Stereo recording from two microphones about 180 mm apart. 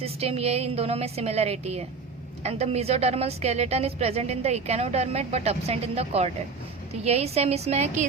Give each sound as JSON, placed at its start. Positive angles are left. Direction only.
{"t": 0.0, "sound": "a woman's voice", "side_deg": -35}